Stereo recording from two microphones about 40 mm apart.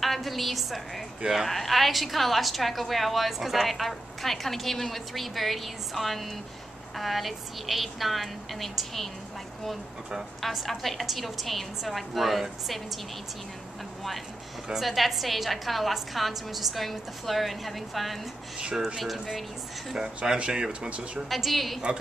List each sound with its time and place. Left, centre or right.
0.0 s a woman's voice: centre
10.4 s a woman's voice: centre
14.7 s a woman's voice: centre
20.2 s speech: right
21.3 s a woman's voice: centre